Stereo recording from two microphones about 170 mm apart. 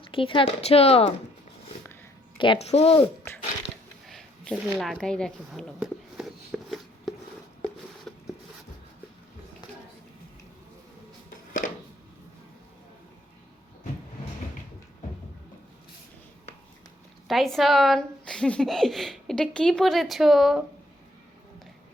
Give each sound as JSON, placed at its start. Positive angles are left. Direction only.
{"t": 0.0, "sound": "speech", "side_deg": 30}
{"t": 2.4, "sound": "speech", "side_deg": 35}
{"t": 4.0, "sound": "a sound", "side_deg": 0}
{"t": 8.1, "sound": "zipper", "side_deg": 5}
{"t": 11.6, "sound": "a sound", "side_deg": 50}
{"t": 17.2, "sound": "speech", "side_deg": 0}